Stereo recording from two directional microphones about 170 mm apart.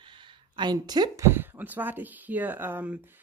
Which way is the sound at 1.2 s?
10° right (ahead or behind).